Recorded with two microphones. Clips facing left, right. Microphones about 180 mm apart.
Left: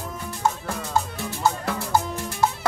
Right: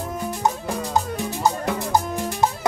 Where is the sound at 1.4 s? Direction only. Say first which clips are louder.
Right 1 dB; 15° right (ahead or behind).